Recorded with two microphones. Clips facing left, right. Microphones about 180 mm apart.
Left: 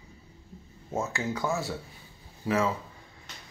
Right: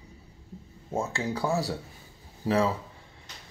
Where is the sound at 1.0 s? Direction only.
30° right (ahead or behind).